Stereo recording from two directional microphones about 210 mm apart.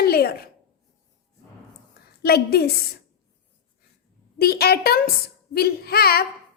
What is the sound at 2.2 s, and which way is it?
Speech, 50° left (ahead or behind).